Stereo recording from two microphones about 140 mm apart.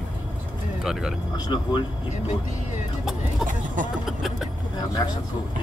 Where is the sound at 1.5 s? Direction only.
35° left (ahead or behind).